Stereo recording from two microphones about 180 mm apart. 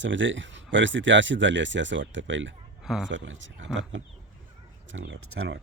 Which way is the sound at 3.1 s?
90° right.